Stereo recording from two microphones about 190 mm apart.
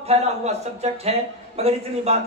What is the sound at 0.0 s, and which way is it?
A man's voice, 35° right (ahead or behind).